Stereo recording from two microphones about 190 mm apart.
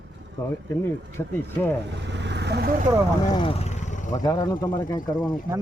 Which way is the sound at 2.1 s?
65° right (ahead or behind).